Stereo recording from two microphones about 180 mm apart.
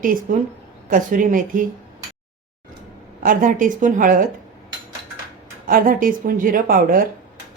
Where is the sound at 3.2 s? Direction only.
45° right (ahead or behind).